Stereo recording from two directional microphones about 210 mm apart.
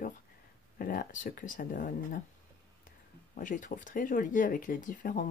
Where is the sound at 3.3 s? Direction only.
40° left (ahead or behind).